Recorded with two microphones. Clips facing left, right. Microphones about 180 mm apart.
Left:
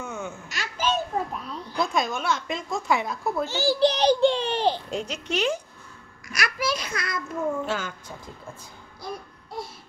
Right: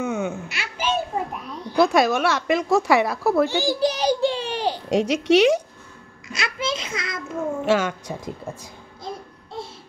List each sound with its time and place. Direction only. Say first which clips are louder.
0.0 s babbling: right 9 dB; 75° right (ahead or behind)
0.6 s a sound: even; 10° right (ahead or behind)
1.8 s a woman's voice: right 9 dB; 75° right (ahead or behind)
3.4 s a child's voice: even; 15° right (ahead or behind)
4.8 s a woman's voice: right 11 dB; 85° right
6.2 s a child's voice: even; 25° right (ahead or behind)
7.6 s a woman's voice: right 9 dB; 85° right
9.0 s a sound: right 2 dB; 25° right (ahead or behind)